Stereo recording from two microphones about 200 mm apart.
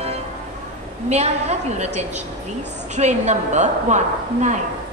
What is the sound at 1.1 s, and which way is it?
A woman's voice, 35° right (ahead or behind).